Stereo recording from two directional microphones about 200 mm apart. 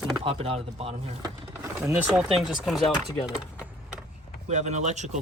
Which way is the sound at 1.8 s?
10° right (ahead or behind).